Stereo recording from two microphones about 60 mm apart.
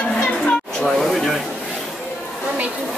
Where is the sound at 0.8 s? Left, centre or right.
Centre.